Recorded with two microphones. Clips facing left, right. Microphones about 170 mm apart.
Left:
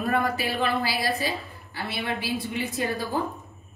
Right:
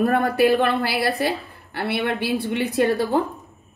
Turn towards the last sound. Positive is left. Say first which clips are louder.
# right 8 dB
turn(degrees=-70)  # may be behind; listen again after turning